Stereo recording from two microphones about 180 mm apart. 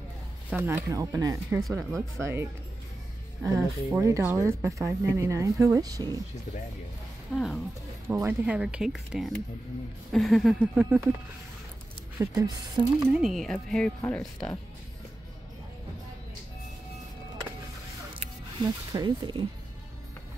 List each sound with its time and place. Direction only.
0.5 s speech: 10° right (ahead or behind)
7.3 s a woman's voice: centre (ahead or behind)
8.1 s a woman's voice: 10° right (ahead or behind)
12.2 s speech: 20° right (ahead or behind)
13.1 s a woman's voice: centre (ahead or behind)
18.6 s speech: 25° right (ahead or behind)